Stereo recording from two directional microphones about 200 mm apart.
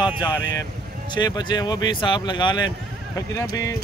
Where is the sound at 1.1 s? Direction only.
20° left (ahead or behind).